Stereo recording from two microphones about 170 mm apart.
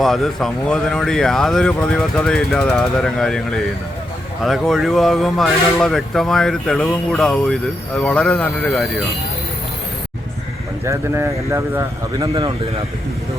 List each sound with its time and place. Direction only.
0.0 s speech: centre (ahead or behind)
4.4 s speech: centre (ahead or behind)
10.8 s speech: 15° right (ahead or behind)